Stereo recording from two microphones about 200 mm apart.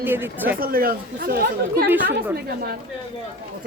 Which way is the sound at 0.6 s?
45° right (ahead or behind).